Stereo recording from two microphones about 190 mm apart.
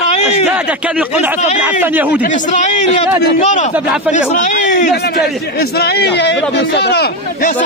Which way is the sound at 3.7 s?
5° right (ahead or behind).